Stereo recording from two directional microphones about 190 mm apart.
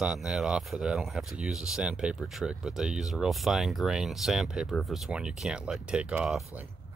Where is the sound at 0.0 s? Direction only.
5° right (ahead or behind).